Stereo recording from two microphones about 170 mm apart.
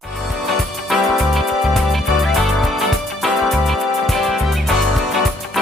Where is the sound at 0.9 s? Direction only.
Centre (ahead or behind).